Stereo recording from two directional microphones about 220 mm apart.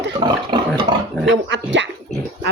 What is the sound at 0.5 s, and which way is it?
Speech, 20° right (ahead or behind).